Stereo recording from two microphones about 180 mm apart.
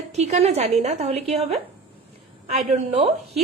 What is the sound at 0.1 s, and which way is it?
A woman's voice, 40° right (ahead or behind).